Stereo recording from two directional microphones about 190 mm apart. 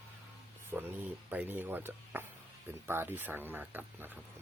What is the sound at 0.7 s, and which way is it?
Speech, 10° right (ahead or behind).